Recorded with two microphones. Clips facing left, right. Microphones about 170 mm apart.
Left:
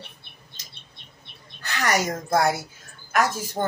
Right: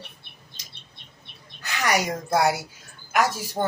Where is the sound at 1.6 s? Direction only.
10° right (ahead or behind).